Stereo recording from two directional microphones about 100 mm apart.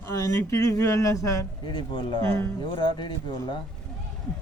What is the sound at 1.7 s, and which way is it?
Speech, 55° left (ahead or behind).